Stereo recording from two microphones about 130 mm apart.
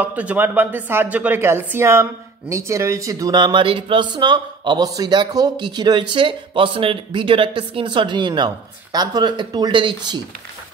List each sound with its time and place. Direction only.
0.0 s speech: 10° right (ahead or behind); by 10.2 s 35° right (ahead or behind)